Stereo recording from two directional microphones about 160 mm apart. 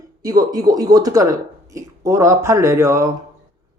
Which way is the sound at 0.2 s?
20° right (ahead or behind).